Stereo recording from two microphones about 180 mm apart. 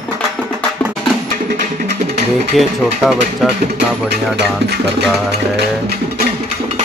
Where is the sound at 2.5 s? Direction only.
Centre (ahead or behind).